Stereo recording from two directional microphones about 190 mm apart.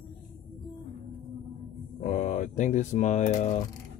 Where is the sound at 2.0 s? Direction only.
40° left (ahead or behind).